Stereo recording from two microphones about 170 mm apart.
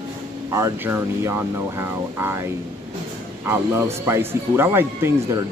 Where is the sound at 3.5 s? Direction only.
15° right (ahead or behind).